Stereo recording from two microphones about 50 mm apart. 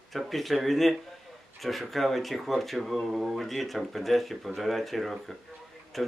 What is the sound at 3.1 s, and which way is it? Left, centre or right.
Speech, centre.